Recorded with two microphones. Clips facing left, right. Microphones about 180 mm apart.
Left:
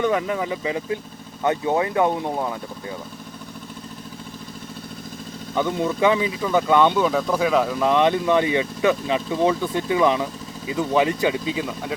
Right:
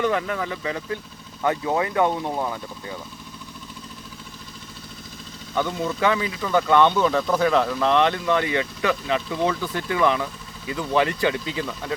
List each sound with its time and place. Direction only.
0.1 s speech: 15° left (ahead or behind)
2.0 s speech: 5° left (ahead or behind)
5.5 s speech: 15° left (ahead or behind)